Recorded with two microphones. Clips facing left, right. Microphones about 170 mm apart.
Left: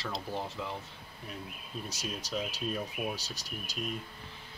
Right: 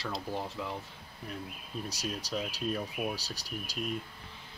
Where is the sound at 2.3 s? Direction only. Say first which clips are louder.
Even; centre (ahead or behind).